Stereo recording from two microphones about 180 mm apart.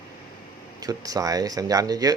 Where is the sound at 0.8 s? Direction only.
20° right (ahead or behind).